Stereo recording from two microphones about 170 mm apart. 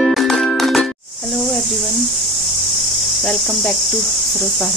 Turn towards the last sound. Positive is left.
turn(degrees=5)  # may be behind; listen again after turning